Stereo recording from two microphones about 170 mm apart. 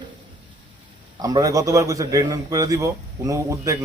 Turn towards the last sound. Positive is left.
turn(degrees=-20)  # may be behind; listen again after turning